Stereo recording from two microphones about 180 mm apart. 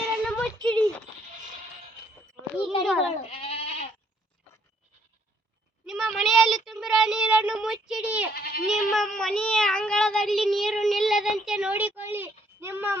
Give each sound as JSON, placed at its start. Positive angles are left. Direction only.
{"t": 0.0, "sound": "child singing", "side_deg": 5}
{"t": 2.8, "sound": "goat", "side_deg": 0}
{"t": 3.2, "sound": "goat", "side_deg": 35}
{"t": 5.8, "sound": "child singing", "side_deg": 0}
{"t": 6.7, "sound": "a sound", "side_deg": 0}
{"t": 8.3, "sound": "goat", "side_deg": 60}
{"t": 8.6, "sound": "meow", "side_deg": 0}